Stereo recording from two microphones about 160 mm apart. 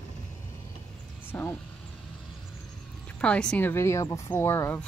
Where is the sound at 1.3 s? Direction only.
15° left (ahead or behind).